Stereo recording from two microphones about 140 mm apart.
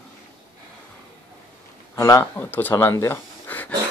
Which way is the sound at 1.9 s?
20° left (ahead or behind).